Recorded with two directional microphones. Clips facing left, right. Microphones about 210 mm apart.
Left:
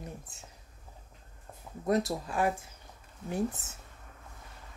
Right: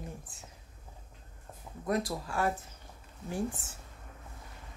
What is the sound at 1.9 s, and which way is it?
A woman's voice, 25° left (ahead or behind).